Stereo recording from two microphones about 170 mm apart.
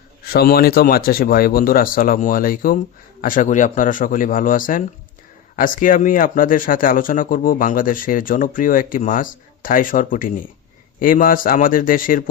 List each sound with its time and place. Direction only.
0.3 s speech: 65° left (ahead or behind)